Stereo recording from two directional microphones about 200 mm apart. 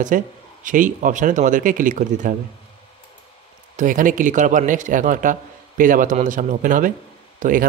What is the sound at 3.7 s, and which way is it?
A man's voice, 40° right (ahead or behind).